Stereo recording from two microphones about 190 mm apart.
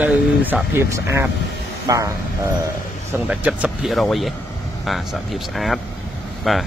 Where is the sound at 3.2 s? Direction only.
5° right (ahead or behind).